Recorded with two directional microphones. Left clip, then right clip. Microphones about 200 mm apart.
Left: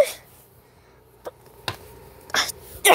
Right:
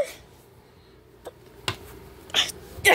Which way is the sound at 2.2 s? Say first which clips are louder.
Even; 20° left (ahead or behind).